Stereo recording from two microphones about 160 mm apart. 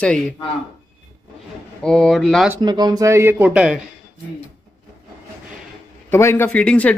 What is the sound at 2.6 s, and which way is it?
Speech, 25° right (ahead or behind).